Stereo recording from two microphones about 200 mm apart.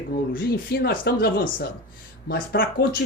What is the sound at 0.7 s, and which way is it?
A woman's voice, 55° left (ahead or behind).